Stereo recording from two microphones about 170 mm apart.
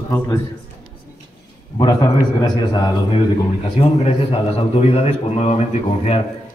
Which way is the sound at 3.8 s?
40° left (ahead or behind).